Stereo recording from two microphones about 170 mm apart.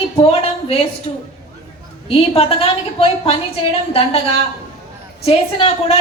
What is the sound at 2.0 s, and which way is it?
A woman's voice, 35° left (ahead or behind).